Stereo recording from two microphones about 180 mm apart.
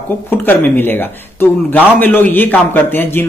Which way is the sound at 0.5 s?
10° left (ahead or behind).